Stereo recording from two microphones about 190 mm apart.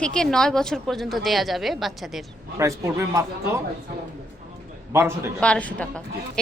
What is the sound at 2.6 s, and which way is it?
A man's voice, 15° right (ahead or behind).